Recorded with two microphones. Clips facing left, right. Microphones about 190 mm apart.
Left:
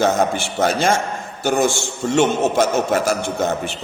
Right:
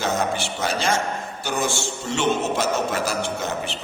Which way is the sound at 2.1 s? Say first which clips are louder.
Left 6 dB; 50° left (ahead or behind).